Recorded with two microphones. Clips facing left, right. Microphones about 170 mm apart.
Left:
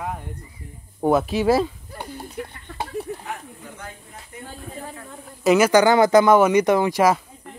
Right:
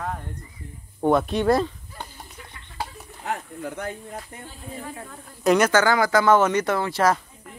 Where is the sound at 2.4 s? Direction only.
60° left (ahead or behind).